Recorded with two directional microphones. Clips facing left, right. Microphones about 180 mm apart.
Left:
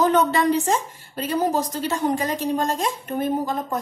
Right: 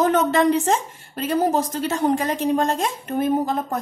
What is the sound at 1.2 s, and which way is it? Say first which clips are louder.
A woman's voice: right 2 dB; 55° right (ahead or behind).